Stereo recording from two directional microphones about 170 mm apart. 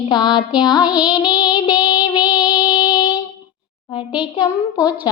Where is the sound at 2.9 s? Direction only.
25° left (ahead or behind).